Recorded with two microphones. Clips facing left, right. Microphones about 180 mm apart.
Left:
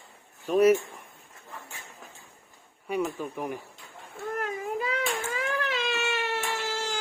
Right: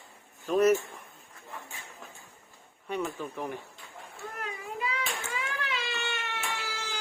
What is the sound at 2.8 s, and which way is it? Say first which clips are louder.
Speech: left 4 dB; 10° left (ahead or behind).